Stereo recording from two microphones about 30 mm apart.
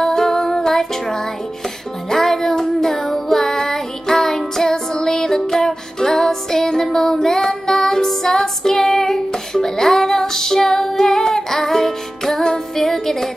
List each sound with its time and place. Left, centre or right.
0.0 s music: centre
2.5 s child singing: centre
4.6 s music: left